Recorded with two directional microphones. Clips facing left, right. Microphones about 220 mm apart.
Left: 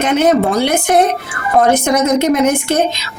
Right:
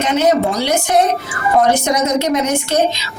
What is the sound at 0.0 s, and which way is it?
A woman's voice, 55° left (ahead or behind).